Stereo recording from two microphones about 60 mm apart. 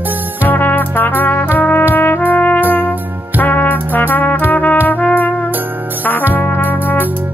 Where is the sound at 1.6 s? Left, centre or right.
Left.